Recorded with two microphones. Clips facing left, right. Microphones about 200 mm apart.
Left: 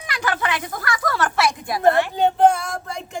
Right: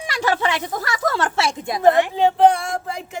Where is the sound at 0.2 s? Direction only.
25° right (ahead or behind).